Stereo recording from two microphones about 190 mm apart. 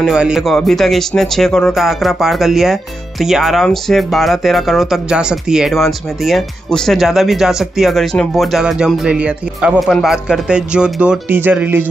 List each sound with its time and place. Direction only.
0.0 s speech: 5° right (ahead or behind)